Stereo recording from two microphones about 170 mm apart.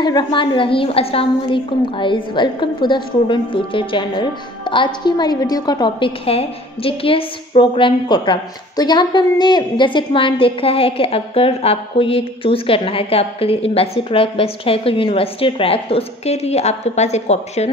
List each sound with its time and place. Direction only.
0.0 s a woman's voice: 25° left (ahead or behind)